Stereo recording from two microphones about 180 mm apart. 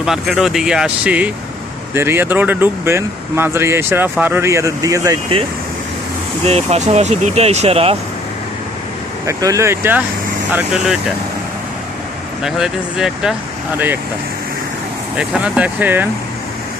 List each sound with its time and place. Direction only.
0.0 s speech: centre (ahead or behind); by 5.1 s 20° right (ahead or behind)
6.4 s speech: 35° right (ahead or behind)
9.2 s speech: 20° right (ahead or behind)
12.4 s speech: 5° right (ahead or behind)
15.2 s speech: 5° right (ahead or behind)